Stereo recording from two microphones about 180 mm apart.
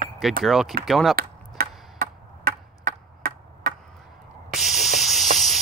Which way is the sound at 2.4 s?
60° right (ahead or behind).